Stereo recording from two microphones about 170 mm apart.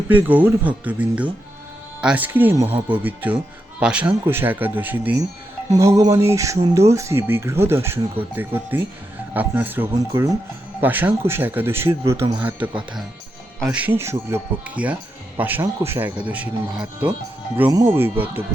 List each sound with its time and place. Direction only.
0.1 s speech: 10° right (ahead or behind)
17.6 s speech: 20° right (ahead or behind)